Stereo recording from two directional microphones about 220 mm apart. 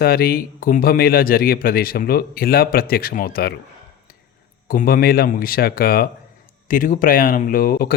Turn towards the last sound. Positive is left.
turn(degrees=45)  # may be behind; listen again after turning